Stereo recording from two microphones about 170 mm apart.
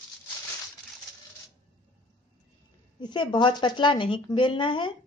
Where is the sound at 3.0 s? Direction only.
25° left (ahead or behind).